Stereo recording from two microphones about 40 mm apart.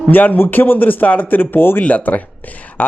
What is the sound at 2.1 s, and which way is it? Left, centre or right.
Speech, left.